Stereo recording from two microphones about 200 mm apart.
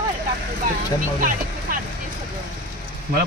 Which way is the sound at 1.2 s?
45° right (ahead or behind).